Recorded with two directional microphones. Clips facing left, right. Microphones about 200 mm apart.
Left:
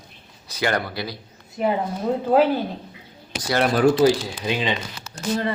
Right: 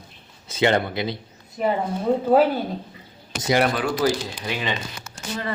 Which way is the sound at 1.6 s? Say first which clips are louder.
Even; centre (ahead or behind).